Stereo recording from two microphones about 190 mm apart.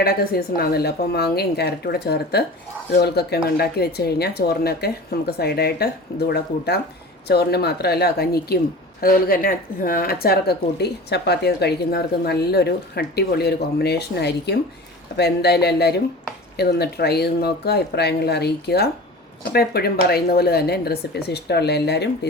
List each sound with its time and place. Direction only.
0.0 s speech: 55° left (ahead or behind)